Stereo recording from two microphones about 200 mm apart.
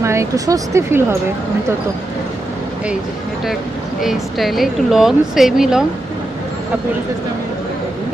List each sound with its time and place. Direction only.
0.0 s speech: 15° right (ahead or behind)
4.0 s speech: centre (ahead or behind)